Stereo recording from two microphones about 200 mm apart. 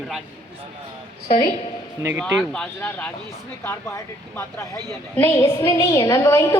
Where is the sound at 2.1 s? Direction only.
Centre (ahead or behind).